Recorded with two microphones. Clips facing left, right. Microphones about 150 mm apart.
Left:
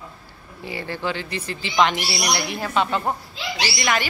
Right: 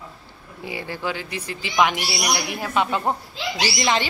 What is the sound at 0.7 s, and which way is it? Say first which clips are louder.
A woman's voice: left 1 dB; 10° right (ahead or behind).